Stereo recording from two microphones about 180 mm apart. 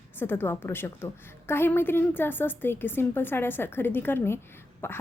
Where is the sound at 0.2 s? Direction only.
10° left (ahead or behind).